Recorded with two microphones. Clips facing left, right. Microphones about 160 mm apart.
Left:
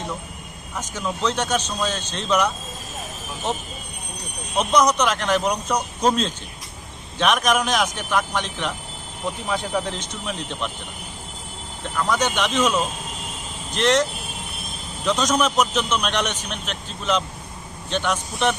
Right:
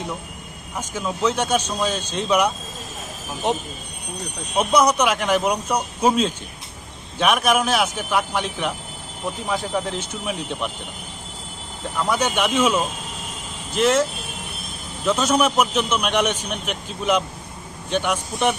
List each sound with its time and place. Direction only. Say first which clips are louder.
0.7 s a man's voice: right 1 dB; 10° right (ahead or behind)
12.0 s a man's voice: right 1 dB; 10° right (ahead or behind)
15.0 s a man's voice: right 2 dB; 5° right (ahead or behind)